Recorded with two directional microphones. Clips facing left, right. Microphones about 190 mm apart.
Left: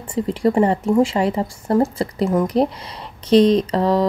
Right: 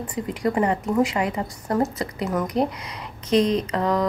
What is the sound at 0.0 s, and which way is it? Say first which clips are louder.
A woman's voice: left 6 dB; 30° left (ahead or behind).